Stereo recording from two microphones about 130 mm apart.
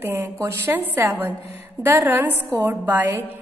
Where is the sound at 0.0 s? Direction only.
15° right (ahead or behind).